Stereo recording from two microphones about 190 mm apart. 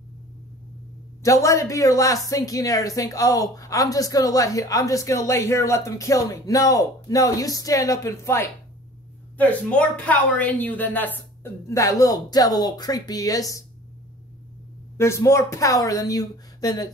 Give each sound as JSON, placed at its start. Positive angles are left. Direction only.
{"t": 1.2, "sound": "a woman's voice", "side_deg": 15}
{"t": 15.0, "sound": "a woman's voice", "side_deg": 15}